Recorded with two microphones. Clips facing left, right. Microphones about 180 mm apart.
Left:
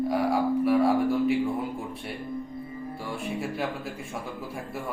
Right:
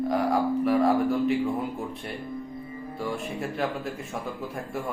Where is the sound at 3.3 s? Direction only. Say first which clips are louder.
Even; 10° left (ahead or behind).